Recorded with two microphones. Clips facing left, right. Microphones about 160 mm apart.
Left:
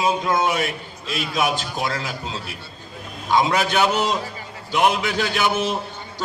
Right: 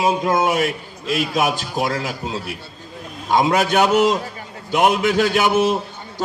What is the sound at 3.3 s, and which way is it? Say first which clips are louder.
A man's voice: right 3 dB; 45° right (ahead or behind).